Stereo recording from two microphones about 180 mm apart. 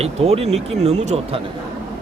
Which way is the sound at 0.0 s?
35° right (ahead or behind).